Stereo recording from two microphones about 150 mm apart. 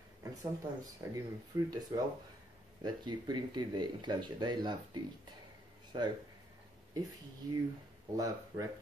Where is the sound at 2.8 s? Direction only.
30° right (ahead or behind).